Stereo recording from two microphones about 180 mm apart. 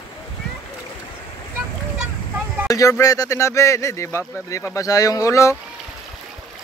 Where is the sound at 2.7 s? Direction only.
20° left (ahead or behind).